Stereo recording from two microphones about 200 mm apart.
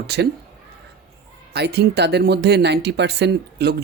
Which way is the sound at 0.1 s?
55° right (ahead or behind).